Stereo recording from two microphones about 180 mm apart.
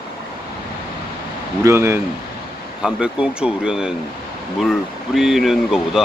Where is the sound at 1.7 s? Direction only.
15° right (ahead or behind).